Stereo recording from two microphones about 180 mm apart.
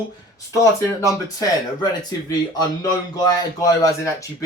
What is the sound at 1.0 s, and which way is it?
Speech, 20° left (ahead or behind).